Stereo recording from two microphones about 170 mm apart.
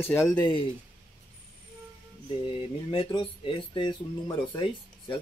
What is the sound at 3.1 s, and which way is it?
Speech, 30° left (ahead or behind).